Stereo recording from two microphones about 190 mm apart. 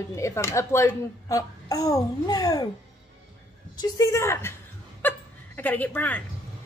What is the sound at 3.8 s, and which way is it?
Speech, 20° left (ahead or behind).